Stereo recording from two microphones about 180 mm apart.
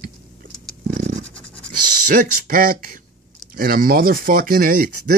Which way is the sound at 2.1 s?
50° right (ahead or behind).